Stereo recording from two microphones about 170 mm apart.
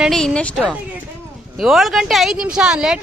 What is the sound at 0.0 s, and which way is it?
Speech, centre (ahead or behind).